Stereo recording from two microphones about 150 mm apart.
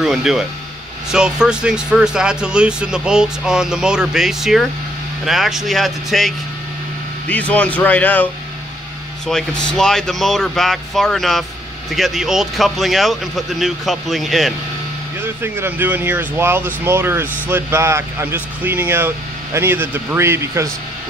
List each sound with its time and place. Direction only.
0.0 s speech: 5° right (ahead or behind)
9.3 s speech: 5° left (ahead or behind)
15.2 s speech: 15° right (ahead or behind)